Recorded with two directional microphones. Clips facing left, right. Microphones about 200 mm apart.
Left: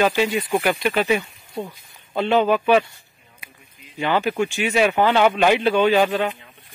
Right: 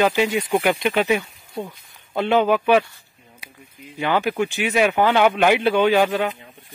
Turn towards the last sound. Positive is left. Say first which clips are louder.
# even
turn(degrees=-10)  # may be behind; listen again after turning